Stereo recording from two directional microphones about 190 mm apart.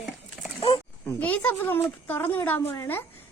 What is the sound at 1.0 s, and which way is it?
A child's voice, 10° left (ahead or behind).